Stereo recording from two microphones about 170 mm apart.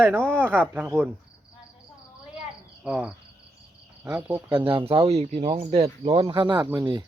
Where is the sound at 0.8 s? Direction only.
10° right (ahead or behind).